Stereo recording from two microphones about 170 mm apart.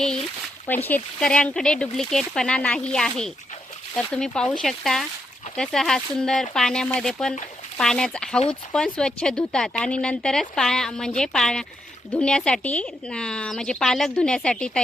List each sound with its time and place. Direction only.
0.9 s speech: 10° left (ahead or behind)